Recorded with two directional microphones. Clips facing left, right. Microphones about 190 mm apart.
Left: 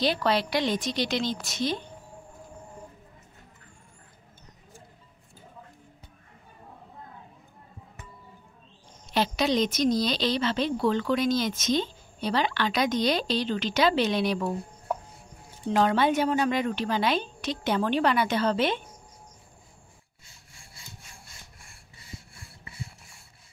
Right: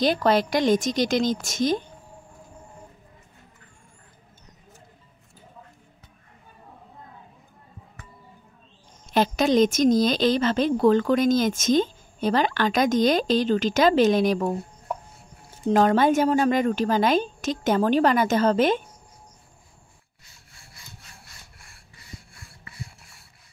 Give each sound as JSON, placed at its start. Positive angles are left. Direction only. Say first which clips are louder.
{"t": 0.0, "sound": "a woman's voice", "louder": "right 5 dB", "side_deg": -45}
{"t": 9.1, "sound": "a woman's voice", "louder": "right 5 dB", "side_deg": -50}
{"t": 15.7, "sound": "a woman's voice", "louder": "right 4 dB", "side_deg": -45}